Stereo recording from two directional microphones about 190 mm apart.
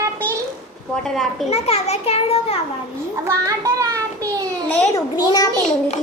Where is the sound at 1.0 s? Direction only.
Centre (ahead or behind).